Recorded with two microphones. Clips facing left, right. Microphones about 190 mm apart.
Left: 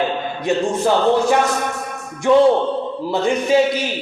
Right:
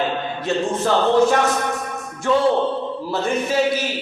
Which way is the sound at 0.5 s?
15° left (ahead or behind).